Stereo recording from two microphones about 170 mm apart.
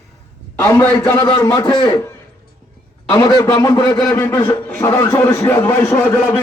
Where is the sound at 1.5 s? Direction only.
25° left (ahead or behind).